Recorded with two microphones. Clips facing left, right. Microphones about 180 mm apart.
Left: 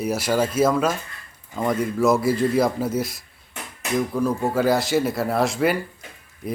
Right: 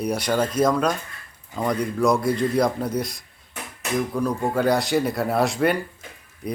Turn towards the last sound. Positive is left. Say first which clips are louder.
# left 1 dB
turn(degrees=0)  # may be behind; listen again after turning